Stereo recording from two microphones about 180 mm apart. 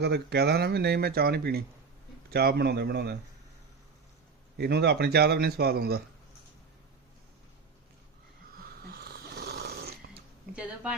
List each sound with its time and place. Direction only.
0.0 s speech: 65° right (ahead or behind)
4.5 s speech: 65° right (ahead or behind)
8.5 s snoring: 55° right (ahead or behind)